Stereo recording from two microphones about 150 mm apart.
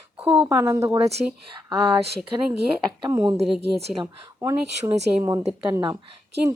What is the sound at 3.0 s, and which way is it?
A woman's voice, 20° right (ahead or behind).